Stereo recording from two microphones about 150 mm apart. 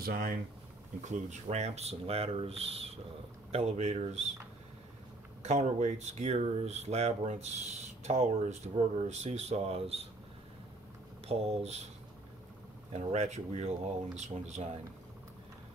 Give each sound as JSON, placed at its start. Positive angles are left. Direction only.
{"t": 0.0, "sound": "speech", "side_deg": -80}
{"t": 1.0, "sound": "speech", "side_deg": -50}
{"t": 5.4, "sound": "speech", "side_deg": -50}
{"t": 11.2, "sound": "speech", "side_deg": -45}
{"t": 12.9, "sound": "speech", "side_deg": -50}